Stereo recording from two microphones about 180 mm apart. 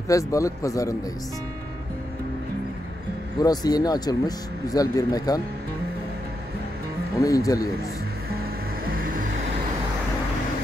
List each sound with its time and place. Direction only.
0.1 s speech: 20° left (ahead or behind)
3.3 s speech: 20° left (ahead or behind)
7.2 s speech: 20° left (ahead or behind)
8.9 s vehicle: 50° right (ahead or behind)